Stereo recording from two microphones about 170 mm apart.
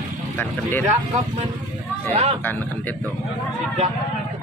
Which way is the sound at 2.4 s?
10° left (ahead or behind).